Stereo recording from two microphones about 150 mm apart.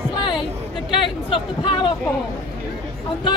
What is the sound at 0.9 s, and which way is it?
Speech, 35° left (ahead or behind).